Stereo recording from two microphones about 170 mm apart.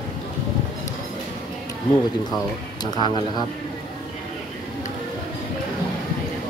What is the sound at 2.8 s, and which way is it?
Speech, 25° left (ahead or behind).